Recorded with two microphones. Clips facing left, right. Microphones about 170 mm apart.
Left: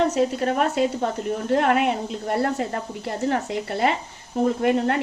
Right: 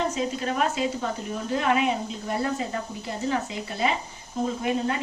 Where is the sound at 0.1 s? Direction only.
60° left (ahead or behind).